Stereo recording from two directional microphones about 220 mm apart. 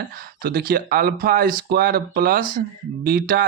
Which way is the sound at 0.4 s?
45° right (ahead or behind).